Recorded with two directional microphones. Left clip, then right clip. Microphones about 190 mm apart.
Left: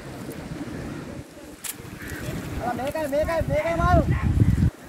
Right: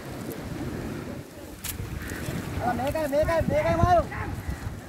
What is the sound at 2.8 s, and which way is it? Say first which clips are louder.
Speech: left 1 dB; 20° left (ahead or behind).